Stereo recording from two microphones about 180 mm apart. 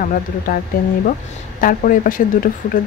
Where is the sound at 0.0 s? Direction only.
50° left (ahead or behind).